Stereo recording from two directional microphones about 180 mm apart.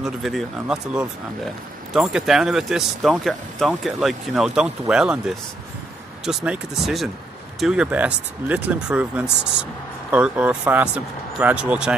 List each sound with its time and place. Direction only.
0.0 s speech: centre (ahead or behind)